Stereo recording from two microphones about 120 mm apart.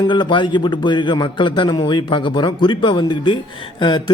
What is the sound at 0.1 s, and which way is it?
Speech, 40° left (ahead or behind).